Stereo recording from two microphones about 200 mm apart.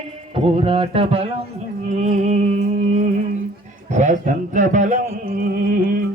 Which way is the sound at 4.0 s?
35° right (ahead or behind).